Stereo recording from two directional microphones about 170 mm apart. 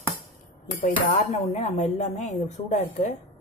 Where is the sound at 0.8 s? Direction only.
40° left (ahead or behind).